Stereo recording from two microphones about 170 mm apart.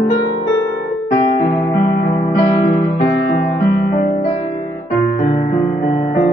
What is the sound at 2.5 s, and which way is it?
Music, 50° left (ahead or behind).